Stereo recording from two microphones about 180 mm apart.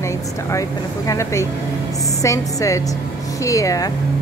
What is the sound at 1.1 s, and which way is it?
A woman's voice, 15° left (ahead or behind).